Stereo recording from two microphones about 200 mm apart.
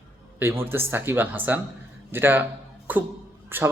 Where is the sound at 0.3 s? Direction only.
10° right (ahead or behind).